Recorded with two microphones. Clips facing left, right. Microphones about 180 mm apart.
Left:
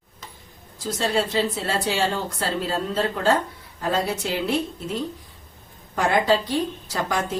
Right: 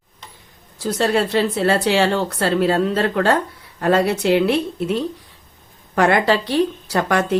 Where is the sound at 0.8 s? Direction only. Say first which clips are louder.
Right 5 dB; 65° right (ahead or behind).